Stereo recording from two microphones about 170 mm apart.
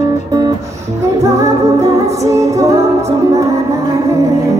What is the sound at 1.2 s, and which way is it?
Music, 20° right (ahead or behind).